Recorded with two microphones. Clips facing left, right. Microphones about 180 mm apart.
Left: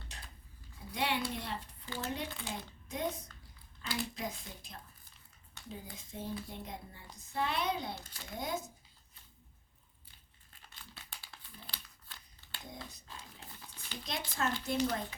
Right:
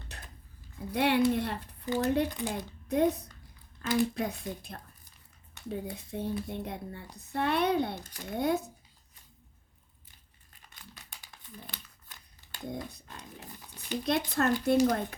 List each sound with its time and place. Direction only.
0.9 s speech: 60° right (ahead or behind)
11.3 s crumpling: 15° right (ahead or behind)
12.7 s a sound: 60° right (ahead or behind)
14.6 s speech: 60° right (ahead or behind)